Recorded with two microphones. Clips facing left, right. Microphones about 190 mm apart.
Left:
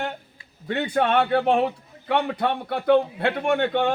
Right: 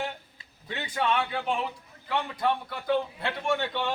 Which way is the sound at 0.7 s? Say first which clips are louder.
Left 7 dB; 60° left (ahead or behind).